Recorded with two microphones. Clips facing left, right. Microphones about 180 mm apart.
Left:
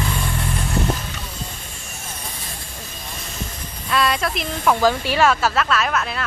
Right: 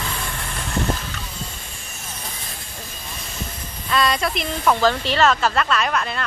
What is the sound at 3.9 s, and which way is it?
Speech, 5° left (ahead or behind).